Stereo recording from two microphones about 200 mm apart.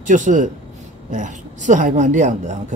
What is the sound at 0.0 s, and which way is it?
Speech, 40° right (ahead or behind).